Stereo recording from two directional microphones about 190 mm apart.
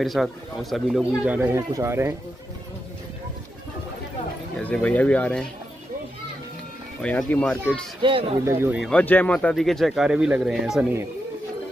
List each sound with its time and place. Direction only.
0.0 s speech: centre (ahead or behind)
4.6 s speech: 5° left (ahead or behind)
7.0 s speech: 5° left (ahead or behind)
8.0 s speech: 30° right (ahead or behind)
8.5 s speech: 10° right (ahead or behind)
8.8 s speech: 10° left (ahead or behind); by 11.1 s 10° right (ahead or behind)